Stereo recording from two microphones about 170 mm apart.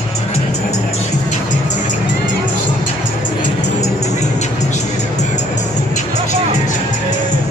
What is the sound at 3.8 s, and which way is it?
Music, 40° left (ahead or behind).